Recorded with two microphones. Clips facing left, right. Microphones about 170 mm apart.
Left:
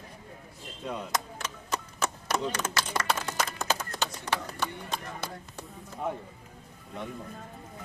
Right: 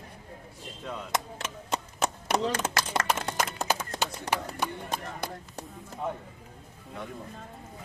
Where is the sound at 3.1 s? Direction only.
35° right (ahead or behind).